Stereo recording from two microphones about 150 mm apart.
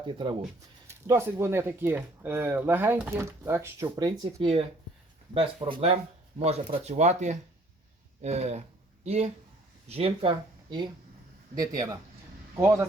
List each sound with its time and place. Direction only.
0.0 s speech: 35° right (ahead or behind)
0.9 s speech: 20° right (ahead or behind)
4.4 s speech: 40° right (ahead or behind); by 12.9 s 20° right (ahead or behind)